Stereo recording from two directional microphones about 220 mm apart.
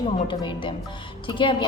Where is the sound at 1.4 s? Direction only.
25° left (ahead or behind).